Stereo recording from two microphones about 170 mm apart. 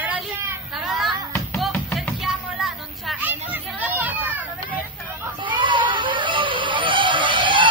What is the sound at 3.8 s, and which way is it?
Children playing, 10° right (ahead or behind).